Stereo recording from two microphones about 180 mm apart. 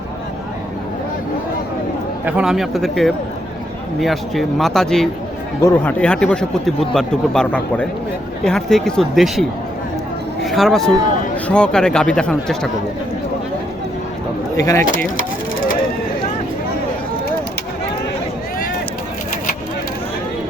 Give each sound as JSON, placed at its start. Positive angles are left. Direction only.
{"t": 2.2, "sound": "speech", "side_deg": -5}
{"t": 14.5, "sound": "speech", "side_deg": 15}